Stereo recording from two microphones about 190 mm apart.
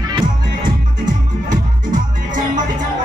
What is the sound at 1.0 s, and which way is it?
Music, 45° right (ahead or behind).